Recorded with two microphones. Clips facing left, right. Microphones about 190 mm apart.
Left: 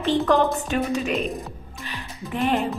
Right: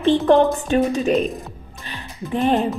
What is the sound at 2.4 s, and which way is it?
Speech, 35° right (ahead or behind).